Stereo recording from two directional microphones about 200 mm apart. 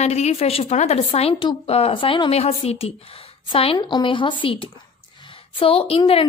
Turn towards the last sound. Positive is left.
turn(degrees=30)  # may be behind; listen again after turning